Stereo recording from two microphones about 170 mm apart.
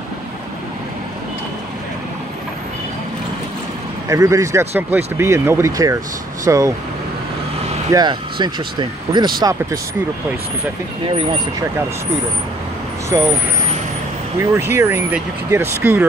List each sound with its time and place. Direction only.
4.1 s speech: 20° right (ahead or behind)
7.9 s speech: 25° right (ahead or behind)
13.1 s speech: 20° right (ahead or behind)
14.4 s speech: 15° right (ahead or behind)